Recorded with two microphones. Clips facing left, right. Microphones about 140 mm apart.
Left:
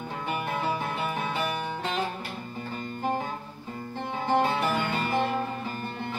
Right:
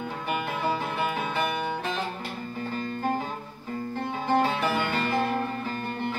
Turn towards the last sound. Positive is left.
turn(degrees=15)  # may be behind; listen again after turning